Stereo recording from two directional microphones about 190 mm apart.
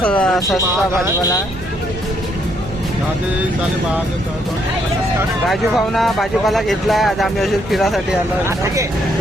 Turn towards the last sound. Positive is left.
turn(degrees=0)  # may be behind; listen again after turning